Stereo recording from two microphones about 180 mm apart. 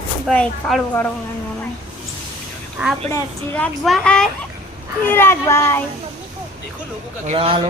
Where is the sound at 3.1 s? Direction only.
10° left (ahead or behind).